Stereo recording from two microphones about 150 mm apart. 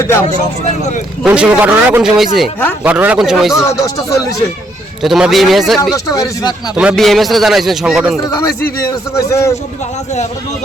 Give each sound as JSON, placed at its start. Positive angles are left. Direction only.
{"t": 1.2, "sound": "a man's voice", "side_deg": -10}
{"t": 3.8, "sound": "speech", "side_deg": 25}
{"t": 5.0, "sound": "a man's voice", "side_deg": 0}
{"t": 5.8, "sound": "speech", "side_deg": 25}
{"t": 6.7, "sound": "a man's voice", "side_deg": 0}
{"t": 8.3, "sound": "speech", "side_deg": 20}